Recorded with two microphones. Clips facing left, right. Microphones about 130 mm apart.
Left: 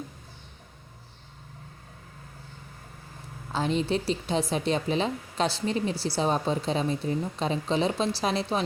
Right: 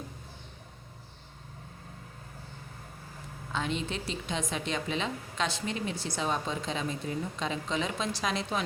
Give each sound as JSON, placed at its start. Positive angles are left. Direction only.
{"t": 3.5, "sound": "speech", "side_deg": 35}